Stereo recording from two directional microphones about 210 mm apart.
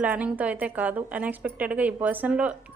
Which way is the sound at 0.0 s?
5° right (ahead or behind).